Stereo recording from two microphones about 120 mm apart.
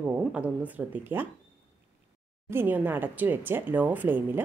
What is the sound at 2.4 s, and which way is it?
Speech, 20° right (ahead or behind).